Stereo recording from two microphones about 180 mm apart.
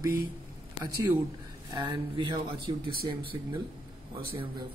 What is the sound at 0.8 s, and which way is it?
Speech, 30° left (ahead or behind).